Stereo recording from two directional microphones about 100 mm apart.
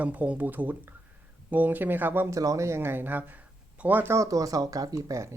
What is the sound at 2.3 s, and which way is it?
Speech, 35° right (ahead or behind).